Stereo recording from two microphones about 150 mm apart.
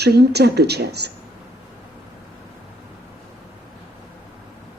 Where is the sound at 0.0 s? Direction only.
90° right.